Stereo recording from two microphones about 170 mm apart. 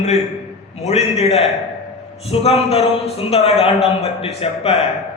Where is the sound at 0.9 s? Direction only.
40° left (ahead or behind).